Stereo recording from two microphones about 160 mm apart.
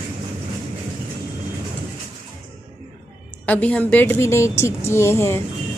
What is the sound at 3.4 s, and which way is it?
A woman's voice, 10° left (ahead or behind).